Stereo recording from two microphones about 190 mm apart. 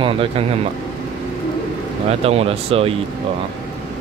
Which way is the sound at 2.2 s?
30° right (ahead or behind).